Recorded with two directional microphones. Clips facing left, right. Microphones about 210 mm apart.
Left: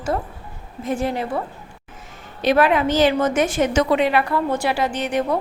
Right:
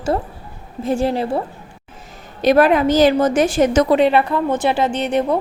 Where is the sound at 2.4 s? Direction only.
40° right (ahead or behind).